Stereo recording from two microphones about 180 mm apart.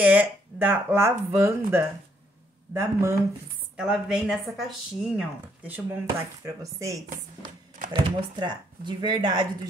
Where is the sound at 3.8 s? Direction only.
5° right (ahead or behind).